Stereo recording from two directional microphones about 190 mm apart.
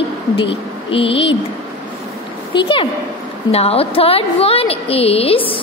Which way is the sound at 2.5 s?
25° left (ahead or behind).